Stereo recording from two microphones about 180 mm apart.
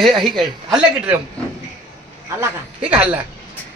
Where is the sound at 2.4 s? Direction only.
5° right (ahead or behind).